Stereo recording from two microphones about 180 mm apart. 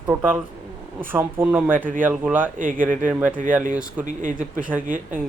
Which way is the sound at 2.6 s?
50° right (ahead or behind).